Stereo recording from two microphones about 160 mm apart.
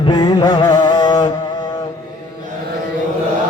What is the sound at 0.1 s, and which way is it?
Music, 30° left (ahead or behind).